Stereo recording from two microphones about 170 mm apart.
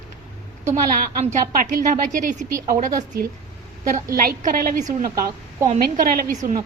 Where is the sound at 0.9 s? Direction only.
55° right (ahead or behind).